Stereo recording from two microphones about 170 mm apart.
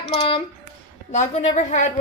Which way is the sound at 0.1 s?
30° left (ahead or behind).